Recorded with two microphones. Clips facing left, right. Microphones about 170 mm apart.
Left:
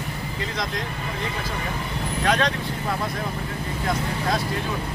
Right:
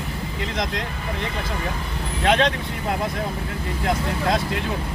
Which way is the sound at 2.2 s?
20° right (ahead or behind).